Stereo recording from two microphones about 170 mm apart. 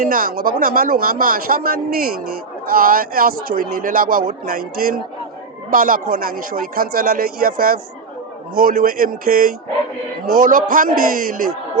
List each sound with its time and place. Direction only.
0.0 s speech: 55° right (ahead or behind)